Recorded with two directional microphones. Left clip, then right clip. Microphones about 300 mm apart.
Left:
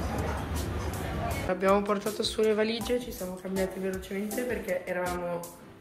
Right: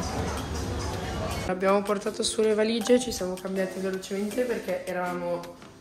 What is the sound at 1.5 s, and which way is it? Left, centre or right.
Speech, centre.